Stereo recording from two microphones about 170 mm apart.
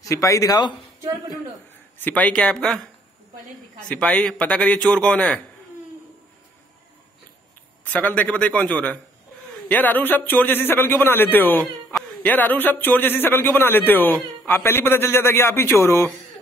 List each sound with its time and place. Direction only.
0.1 s a man's voice: 20° left (ahead or behind)
2.0 s speech: 10° left (ahead or behind)
3.9 s a man's voice: 5° left (ahead or behind)
7.9 s a man's voice: 10° left (ahead or behind)